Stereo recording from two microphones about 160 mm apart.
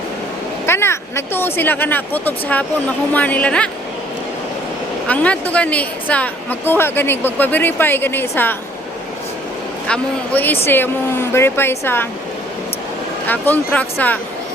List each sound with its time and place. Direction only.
0.6 s a woman's voice: 15° left (ahead or behind)
5.0 s a woman's voice: 10° left (ahead or behind)
9.9 s a woman's voice: 10° left (ahead or behind)
13.2 s a woman's voice: 10° left (ahead or behind)